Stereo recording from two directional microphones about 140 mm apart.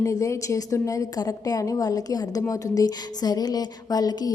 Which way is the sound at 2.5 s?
25° left (ahead or behind).